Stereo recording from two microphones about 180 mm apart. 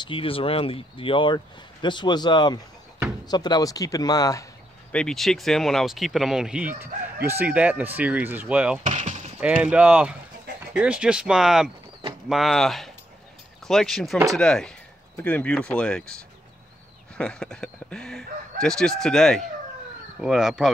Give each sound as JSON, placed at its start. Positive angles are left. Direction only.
{"t": 0.0, "sound": "speech", "side_deg": 30}
{"t": 4.9, "sound": "speech", "side_deg": 5}
{"t": 8.8, "sound": "chop", "side_deg": -45}
{"t": 9.4, "sound": "speech", "side_deg": -5}
{"t": 17.2, "sound": "speech", "side_deg": 5}